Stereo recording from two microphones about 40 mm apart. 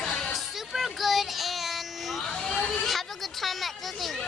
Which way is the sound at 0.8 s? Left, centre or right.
Centre.